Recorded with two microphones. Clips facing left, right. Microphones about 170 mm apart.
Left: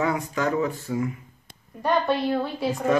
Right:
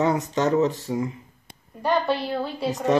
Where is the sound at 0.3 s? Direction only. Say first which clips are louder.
Right 4 dB; 25° right (ahead or behind).